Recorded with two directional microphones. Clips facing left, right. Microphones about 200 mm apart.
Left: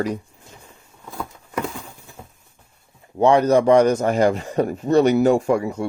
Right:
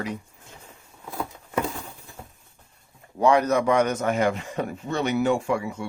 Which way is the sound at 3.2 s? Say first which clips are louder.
Left 5 dB; 30° left (ahead or behind).